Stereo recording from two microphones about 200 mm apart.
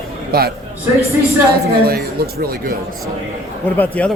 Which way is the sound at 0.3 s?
50° right (ahead or behind).